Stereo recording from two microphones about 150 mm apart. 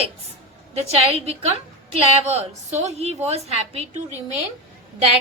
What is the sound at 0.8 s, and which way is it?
A woman's voice, 45° right (ahead or behind).